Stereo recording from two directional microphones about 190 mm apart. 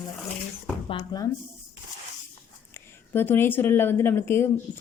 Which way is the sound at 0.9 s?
25° left (ahead or behind).